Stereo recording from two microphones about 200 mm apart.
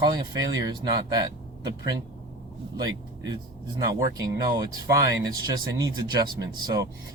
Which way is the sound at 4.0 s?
15° right (ahead or behind).